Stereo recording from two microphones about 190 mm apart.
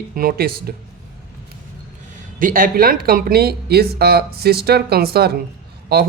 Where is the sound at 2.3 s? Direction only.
45° right (ahead or behind).